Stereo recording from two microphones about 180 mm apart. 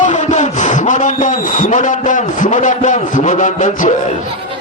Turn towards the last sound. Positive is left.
turn(degrees=45)  # may be behind; listen again after turning